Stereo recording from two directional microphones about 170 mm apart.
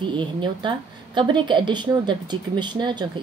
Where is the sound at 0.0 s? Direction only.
30° right (ahead or behind).